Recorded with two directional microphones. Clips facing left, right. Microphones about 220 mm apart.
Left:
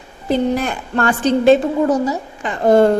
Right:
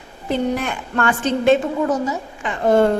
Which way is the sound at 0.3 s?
35° left (ahead or behind).